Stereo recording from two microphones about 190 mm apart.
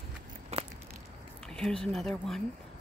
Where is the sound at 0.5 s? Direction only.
35° right (ahead or behind).